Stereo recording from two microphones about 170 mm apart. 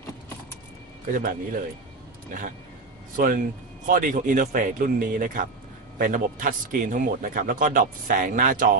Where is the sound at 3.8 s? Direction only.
50° right (ahead or behind).